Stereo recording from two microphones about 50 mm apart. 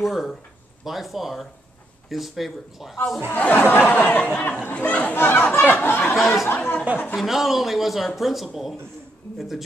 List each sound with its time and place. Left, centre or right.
0.0 s a man's voice: centre
3.3 s a sound: left
4.2 s speech: left
5.1 s speech: left
5.7 s a sound: left
6.1 s a man's voice: centre
6.5 s speech: left
7.2 s a man's voice: centre